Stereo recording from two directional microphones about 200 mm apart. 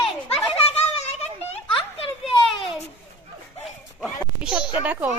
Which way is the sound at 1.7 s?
25° left (ahead or behind).